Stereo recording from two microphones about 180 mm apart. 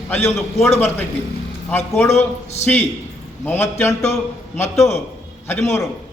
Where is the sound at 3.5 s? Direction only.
15° left (ahead or behind).